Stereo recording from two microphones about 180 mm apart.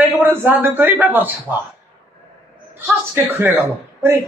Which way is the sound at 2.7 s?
10° right (ahead or behind).